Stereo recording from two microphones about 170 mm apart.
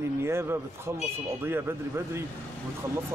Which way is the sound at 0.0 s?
15° right (ahead or behind).